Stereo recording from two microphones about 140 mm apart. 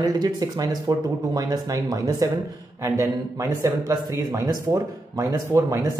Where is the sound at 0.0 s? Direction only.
30° right (ahead or behind).